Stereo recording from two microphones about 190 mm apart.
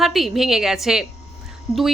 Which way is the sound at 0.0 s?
Centre (ahead or behind).